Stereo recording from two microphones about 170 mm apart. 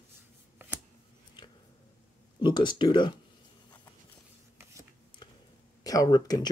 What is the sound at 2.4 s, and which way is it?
Speech, 25° left (ahead or behind).